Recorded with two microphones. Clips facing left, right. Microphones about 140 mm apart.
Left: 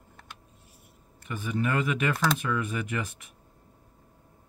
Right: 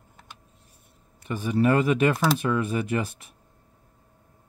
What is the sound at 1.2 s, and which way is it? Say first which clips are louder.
Speech: right 7 dB; 35° right (ahead or behind).